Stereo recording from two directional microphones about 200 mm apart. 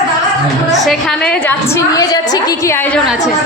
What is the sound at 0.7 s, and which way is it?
A woman's voice, centre (ahead or behind).